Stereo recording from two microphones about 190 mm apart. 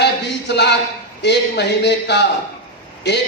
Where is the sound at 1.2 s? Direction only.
65° left (ahead or behind).